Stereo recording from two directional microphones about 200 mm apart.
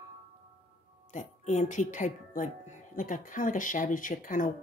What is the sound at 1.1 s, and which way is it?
Speech, 35° left (ahead or behind).